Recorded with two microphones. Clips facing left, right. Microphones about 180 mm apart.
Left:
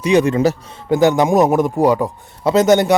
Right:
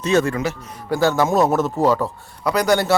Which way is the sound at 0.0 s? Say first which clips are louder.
Left 4 dB; 15° left (ahead or behind).